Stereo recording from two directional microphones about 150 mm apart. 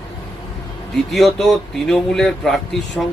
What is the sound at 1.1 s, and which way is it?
A man's voice, centre (ahead or behind).